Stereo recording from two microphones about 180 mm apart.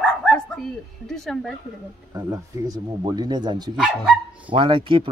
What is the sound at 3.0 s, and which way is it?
Speech, 25° right (ahead or behind).